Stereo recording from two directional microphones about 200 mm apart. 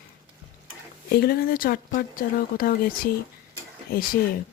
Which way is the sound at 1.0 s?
50° left (ahead or behind).